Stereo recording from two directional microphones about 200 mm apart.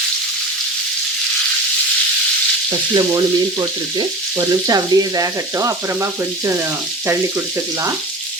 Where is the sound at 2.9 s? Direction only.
20° right (ahead or behind).